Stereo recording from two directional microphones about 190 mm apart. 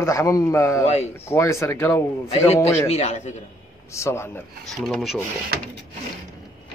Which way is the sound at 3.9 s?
15° left (ahead or behind).